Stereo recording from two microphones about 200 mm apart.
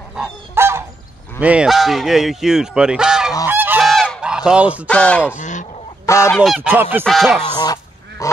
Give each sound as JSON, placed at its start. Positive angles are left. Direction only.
{"t": 0.1, "sound": "goose", "side_deg": -10}
{"t": 1.4, "sound": "speech", "side_deg": -5}
{"t": 3.4, "sound": "goose", "side_deg": -10}
{"t": 4.8, "sound": "speech", "side_deg": 5}
{"t": 5.4, "sound": "goose", "side_deg": 40}
{"t": 6.0, "sound": "goose", "side_deg": 15}
{"t": 6.3, "sound": "speech", "side_deg": 0}
{"t": 6.7, "sound": "goose", "side_deg": -10}
{"t": 7.1, "sound": "speech", "side_deg": 0}
{"t": 7.5, "sound": "goose", "side_deg": 20}